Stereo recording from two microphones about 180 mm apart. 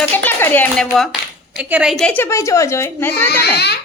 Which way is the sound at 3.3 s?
65° left (ahead or behind).